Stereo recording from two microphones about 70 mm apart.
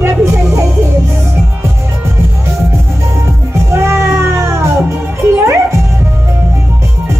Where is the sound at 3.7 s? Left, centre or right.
Right.